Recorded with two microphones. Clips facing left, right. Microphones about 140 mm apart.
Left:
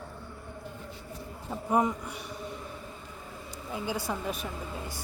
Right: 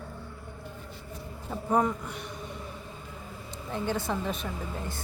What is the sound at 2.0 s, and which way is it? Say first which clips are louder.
Speech: right 1 dB; 10° left (ahead or behind).